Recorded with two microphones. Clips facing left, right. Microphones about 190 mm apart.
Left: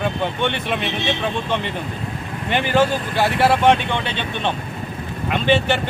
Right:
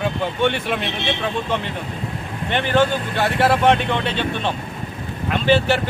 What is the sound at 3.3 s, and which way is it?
Speech, centre (ahead or behind).